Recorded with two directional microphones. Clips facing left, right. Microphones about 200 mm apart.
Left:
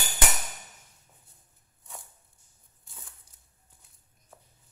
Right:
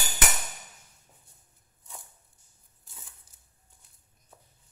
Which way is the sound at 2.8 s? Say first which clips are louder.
Left 1 dB; centre (ahead or behind).